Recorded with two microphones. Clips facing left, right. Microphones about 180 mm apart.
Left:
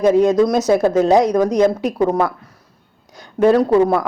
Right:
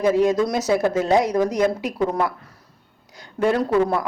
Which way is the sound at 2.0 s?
40° left (ahead or behind).